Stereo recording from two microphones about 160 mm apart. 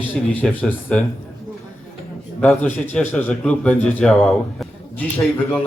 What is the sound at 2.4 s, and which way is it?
A man's voice, 10° left (ahead or behind).